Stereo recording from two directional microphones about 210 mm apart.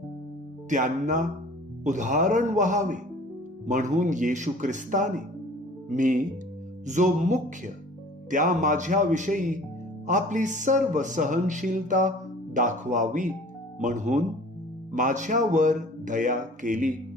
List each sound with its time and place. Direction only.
0.7 s speech: 35° right (ahead or behind)